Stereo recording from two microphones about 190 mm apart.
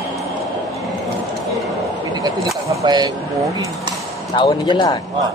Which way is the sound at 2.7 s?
20° right (ahead or behind).